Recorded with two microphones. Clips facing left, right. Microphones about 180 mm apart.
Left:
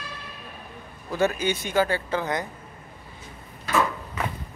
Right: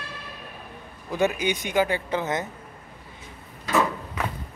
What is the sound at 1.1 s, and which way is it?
Speech, 15° right (ahead or behind).